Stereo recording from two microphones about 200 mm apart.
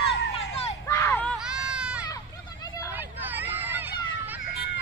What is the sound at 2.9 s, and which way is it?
Hubbub, 10° right (ahead or behind).